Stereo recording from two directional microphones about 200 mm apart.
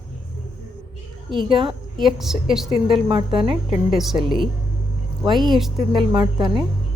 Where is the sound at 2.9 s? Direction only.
25° right (ahead or behind).